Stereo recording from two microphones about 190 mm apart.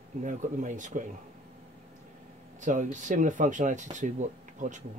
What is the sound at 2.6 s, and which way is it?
Speech, 40° right (ahead or behind).